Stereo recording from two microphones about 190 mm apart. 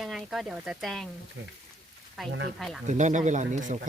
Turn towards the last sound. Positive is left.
turn(degrees=-40)  # may be behind; listen again after turning